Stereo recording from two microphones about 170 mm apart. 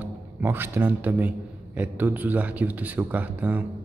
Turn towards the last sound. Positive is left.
turn(degrees=-10)  # may be behind; listen again after turning